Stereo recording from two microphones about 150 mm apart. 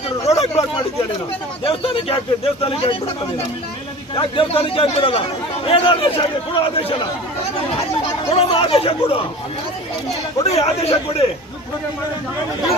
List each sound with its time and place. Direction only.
0.3 s a sound: 45° left (ahead or behind)
1.6 s speech: 35° left (ahead or behind)
4.1 s speech: 35° left (ahead or behind)
8.3 s speech: 40° left (ahead or behind)
10.4 s a man's voice: 45° left (ahead or behind)